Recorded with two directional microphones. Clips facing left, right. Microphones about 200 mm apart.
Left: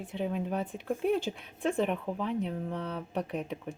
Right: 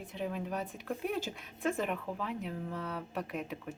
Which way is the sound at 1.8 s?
30° left (ahead or behind).